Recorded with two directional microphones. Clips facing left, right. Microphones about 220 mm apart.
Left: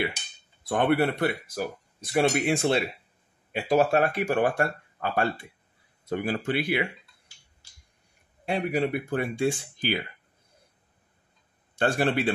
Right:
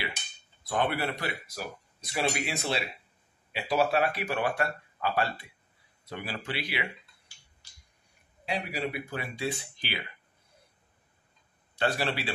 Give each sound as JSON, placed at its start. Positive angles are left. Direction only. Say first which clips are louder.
{"t": 0.7, "sound": "speech", "louder": "left 7 dB", "side_deg": 60}
{"t": 8.5, "sound": "speech", "louder": "left 7 dB", "side_deg": 55}
{"t": 11.8, "sound": "speech", "louder": "left 5 dB", "side_deg": 50}